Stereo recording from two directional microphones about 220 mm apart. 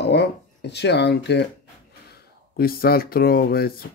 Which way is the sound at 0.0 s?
50° left (ahead or behind).